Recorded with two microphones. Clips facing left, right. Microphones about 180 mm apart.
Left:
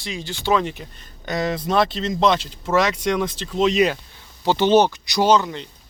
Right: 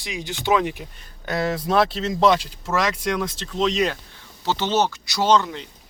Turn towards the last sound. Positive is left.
turn(degrees=0)  # may be behind; listen again after turning